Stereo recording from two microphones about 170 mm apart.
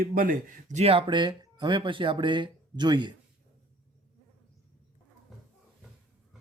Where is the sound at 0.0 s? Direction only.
55° right (ahead or behind); by 3.2 s 25° right (ahead or behind).